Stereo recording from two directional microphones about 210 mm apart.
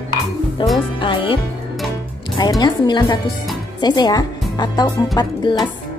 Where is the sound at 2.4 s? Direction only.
20° left (ahead or behind).